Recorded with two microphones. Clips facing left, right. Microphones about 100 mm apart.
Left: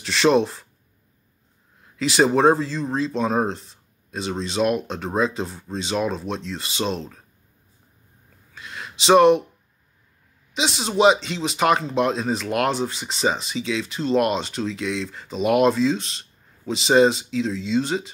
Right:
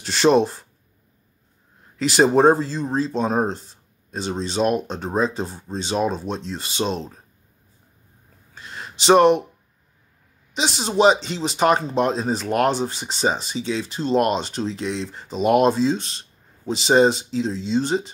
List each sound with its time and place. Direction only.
0.0 s speech: 35° right (ahead or behind)
2.0 s speech: 40° right (ahead or behind)
8.5 s a sound: 35° right (ahead or behind)
10.6 s speech: 35° right (ahead or behind)